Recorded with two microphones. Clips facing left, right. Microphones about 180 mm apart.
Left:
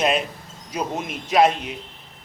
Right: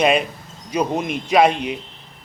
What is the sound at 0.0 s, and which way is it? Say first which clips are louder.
Speech: right 4 dB; 60° right (ahead or behind).